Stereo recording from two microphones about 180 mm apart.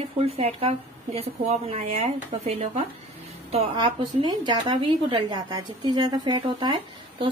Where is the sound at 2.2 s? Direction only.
45° right (ahead or behind).